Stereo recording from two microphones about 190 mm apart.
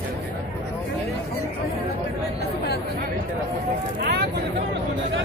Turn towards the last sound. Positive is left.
turn(degrees=-55)  # may be behind; listen again after turning